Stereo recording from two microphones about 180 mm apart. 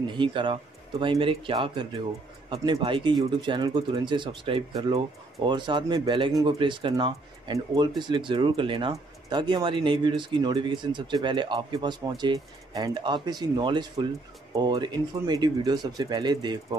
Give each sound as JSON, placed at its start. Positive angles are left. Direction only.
{"t": 0.1, "sound": "speech", "side_deg": -25}